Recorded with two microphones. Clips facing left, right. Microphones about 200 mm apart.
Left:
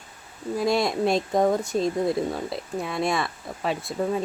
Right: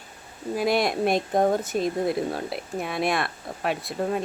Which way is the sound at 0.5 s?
65° right (ahead or behind).